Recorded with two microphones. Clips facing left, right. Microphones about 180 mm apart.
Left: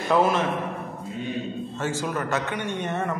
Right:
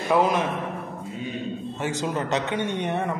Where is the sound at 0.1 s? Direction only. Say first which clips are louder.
Even; 15° right (ahead or behind).